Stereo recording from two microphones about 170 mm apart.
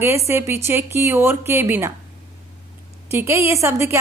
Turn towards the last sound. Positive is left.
turn(degrees=-15)  # may be behind; listen again after turning